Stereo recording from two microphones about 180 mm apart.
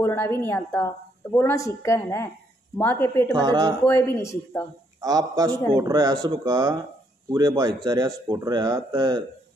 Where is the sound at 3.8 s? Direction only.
15° left (ahead or behind).